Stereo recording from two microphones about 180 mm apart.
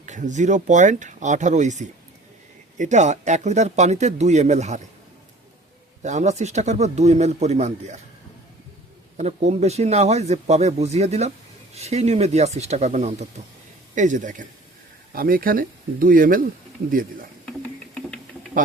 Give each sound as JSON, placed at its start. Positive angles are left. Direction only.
{"t": 0.0, "sound": "speech", "side_deg": -45}
{"t": 6.0, "sound": "speech", "side_deg": -40}
{"t": 9.1, "sound": "speech", "side_deg": -40}